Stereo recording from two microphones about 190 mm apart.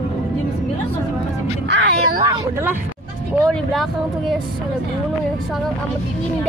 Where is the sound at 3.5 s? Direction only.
Centre (ahead or behind).